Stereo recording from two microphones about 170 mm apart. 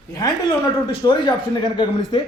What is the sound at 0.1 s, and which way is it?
A man's voice, 20° left (ahead or behind).